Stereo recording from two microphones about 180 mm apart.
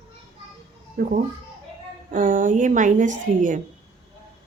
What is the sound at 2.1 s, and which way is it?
A woman's voice, 50° right (ahead or behind).